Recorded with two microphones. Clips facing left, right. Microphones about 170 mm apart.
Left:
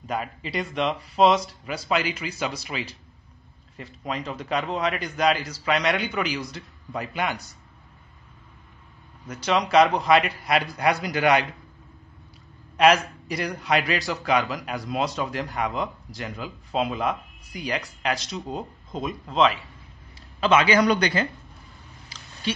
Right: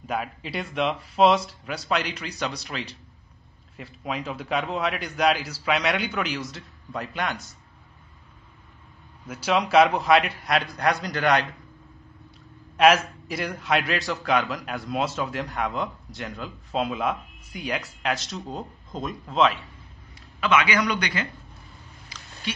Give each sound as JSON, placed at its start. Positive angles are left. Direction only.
{"t": 0.0, "sound": "a man's voice", "side_deg": 0}
{"t": 9.3, "sound": "a man's voice", "side_deg": -5}
{"t": 12.7, "sound": "a man's voice", "side_deg": 0}
{"t": 20.3, "sound": "a man's voice", "side_deg": 30}